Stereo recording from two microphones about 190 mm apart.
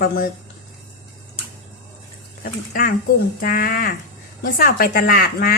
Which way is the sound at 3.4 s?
50° left (ahead or behind).